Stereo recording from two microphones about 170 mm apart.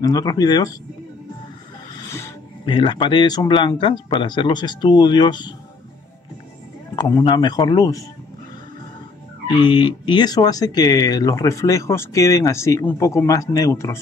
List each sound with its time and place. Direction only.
0.0 s speech: 20° left (ahead or behind)
2.0 s music: 15° left (ahead or behind)
2.6 s speech: 30° left (ahead or behind)
7.0 s speech: 20° left (ahead or behind)
9.5 s speech: 30° left (ahead or behind)